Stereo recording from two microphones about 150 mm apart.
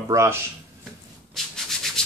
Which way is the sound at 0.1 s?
20° right (ahead or behind).